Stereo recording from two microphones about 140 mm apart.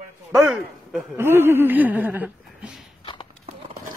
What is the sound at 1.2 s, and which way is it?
Speech, 15° right (ahead or behind).